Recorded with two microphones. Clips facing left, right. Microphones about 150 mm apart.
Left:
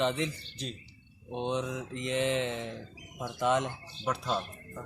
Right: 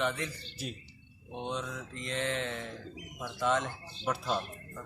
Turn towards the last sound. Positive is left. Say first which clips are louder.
# left 1 dB
turn(degrees=0)  # may be behind; listen again after turning